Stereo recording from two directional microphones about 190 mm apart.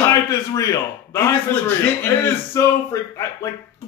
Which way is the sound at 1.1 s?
15° left (ahead or behind).